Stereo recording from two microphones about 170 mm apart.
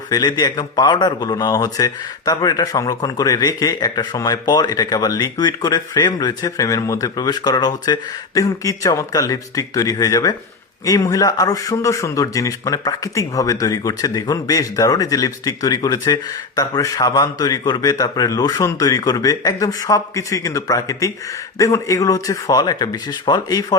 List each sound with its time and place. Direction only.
0.1 s a man's voice: 25° left (ahead or behind)